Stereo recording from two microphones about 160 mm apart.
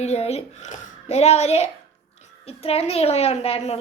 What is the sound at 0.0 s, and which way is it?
A woman's voice, 40° left (ahead or behind).